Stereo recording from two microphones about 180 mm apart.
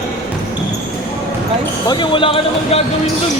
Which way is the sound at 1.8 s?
25° left (ahead or behind).